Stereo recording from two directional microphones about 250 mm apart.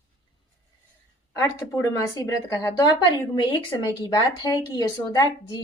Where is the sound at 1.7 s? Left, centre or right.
Centre.